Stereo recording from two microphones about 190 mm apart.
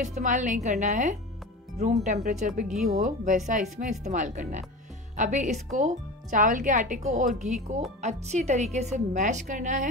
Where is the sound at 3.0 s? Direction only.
40° right (ahead or behind).